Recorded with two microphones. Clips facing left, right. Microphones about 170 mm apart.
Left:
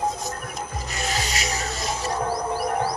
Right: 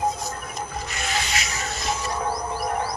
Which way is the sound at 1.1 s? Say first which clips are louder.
Right 2 dB; 40° left (ahead or behind).